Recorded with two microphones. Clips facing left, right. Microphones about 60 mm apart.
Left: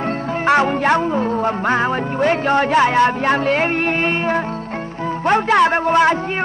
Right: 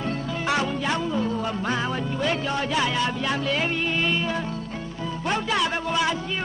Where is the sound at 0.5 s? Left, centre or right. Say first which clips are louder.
Left 11 dB; left.